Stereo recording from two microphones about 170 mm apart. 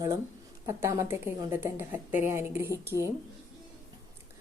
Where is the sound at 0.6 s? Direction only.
15° right (ahead or behind).